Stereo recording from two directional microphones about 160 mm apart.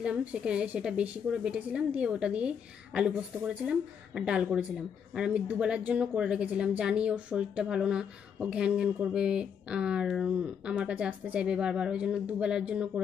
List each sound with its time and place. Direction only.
0.0 s a woman's voice: 5° right (ahead or behind)